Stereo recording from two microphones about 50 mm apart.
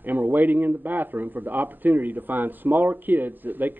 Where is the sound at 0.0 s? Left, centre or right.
Right.